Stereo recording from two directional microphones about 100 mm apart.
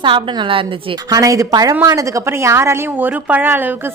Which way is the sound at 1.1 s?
35° right (ahead or behind).